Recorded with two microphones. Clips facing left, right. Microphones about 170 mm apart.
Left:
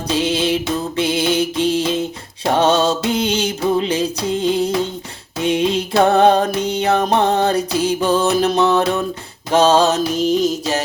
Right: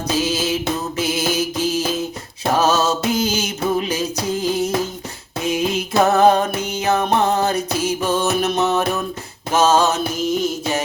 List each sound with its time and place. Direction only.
0.1 s mantra: 30° left (ahead or behind)
2.5 s music: 30° left (ahead or behind)
9.5 s mantra: 30° left (ahead or behind)